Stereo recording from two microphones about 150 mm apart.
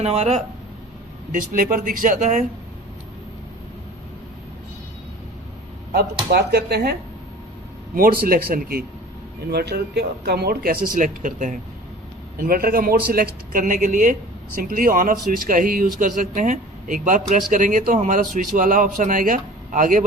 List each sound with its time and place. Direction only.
0.0 s speech: 45° right (ahead or behind)
1.3 s speech: 60° right (ahead or behind)
6.3 s speech: 90° right
7.9 s speech: 75° right (ahead or behind); by 11.5 s 60° right (ahead or behind)
12.4 s a man's voice: 75° right (ahead or behind); by 20.1 s 60° right (ahead or behind)